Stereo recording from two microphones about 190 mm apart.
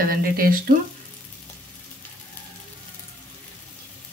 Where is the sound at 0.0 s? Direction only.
50° right (ahead or behind).